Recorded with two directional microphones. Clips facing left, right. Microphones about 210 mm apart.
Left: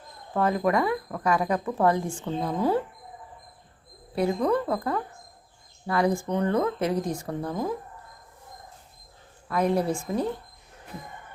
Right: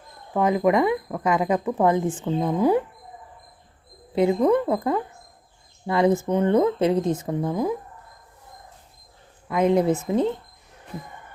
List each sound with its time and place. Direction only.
0.3 s speech: 15° right (ahead or behind)
4.1 s speech: 20° right (ahead or behind)
9.5 s speech: 20° right (ahead or behind)